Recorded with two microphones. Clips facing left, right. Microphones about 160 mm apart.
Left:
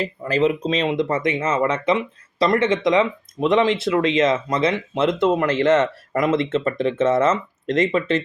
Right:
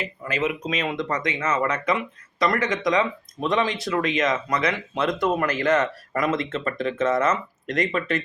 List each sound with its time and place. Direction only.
0.0 s speech: 35° left (ahead or behind)